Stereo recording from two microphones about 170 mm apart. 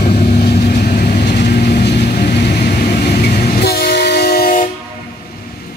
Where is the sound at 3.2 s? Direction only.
60° left (ahead or behind).